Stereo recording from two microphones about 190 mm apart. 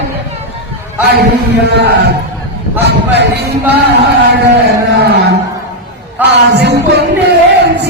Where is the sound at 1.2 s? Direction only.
60° right (ahead or behind).